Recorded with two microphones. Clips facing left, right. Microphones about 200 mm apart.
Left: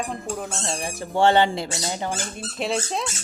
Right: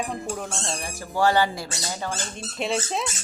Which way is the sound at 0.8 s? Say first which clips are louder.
Left 3 dB; 25° left (ahead or behind).